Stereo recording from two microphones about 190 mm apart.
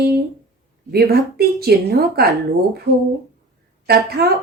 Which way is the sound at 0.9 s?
55° right (ahead or behind).